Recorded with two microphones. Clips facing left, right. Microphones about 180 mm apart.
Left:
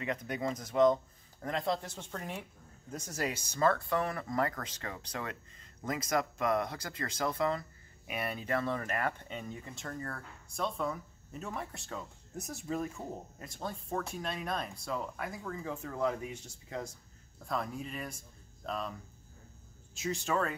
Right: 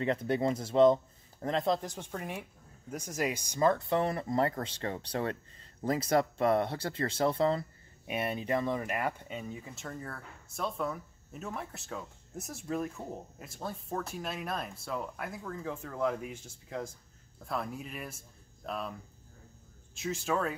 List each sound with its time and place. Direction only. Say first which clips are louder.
0.0 s speech: right 6 dB; 30° right (ahead or behind); by 20.5 s centre (ahead or behind)